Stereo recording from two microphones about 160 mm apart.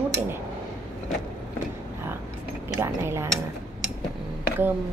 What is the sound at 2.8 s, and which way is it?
Speech, 15° right (ahead or behind).